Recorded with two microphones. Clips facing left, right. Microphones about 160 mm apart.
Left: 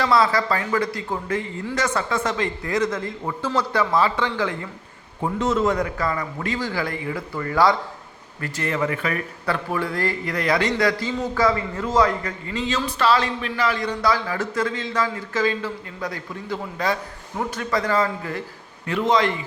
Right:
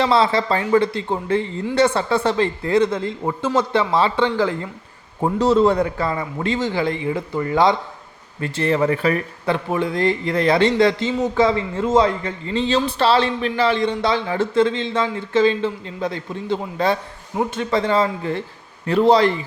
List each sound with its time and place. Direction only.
0.0 s a man's voice: 25° right (ahead or behind)